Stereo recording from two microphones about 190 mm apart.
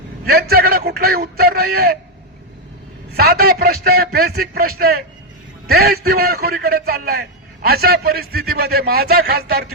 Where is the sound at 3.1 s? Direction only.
55° right (ahead or behind).